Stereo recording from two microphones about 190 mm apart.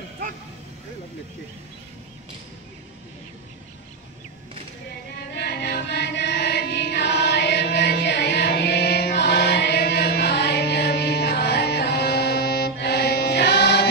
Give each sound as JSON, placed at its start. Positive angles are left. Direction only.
{"t": 5.3, "sound": "music", "side_deg": 60}